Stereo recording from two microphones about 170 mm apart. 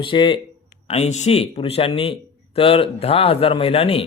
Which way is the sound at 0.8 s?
40° left (ahead or behind).